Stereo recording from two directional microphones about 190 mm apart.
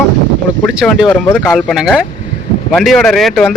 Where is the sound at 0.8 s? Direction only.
5° right (ahead or behind).